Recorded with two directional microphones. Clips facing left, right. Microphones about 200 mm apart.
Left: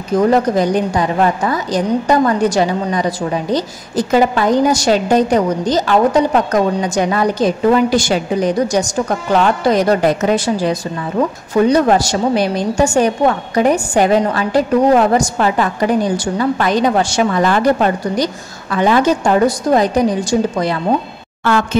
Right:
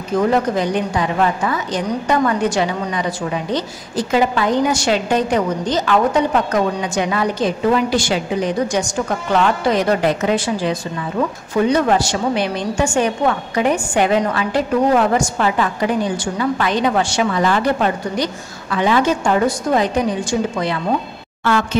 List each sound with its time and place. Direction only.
0.3 s a woman's voice: 40° left (ahead or behind)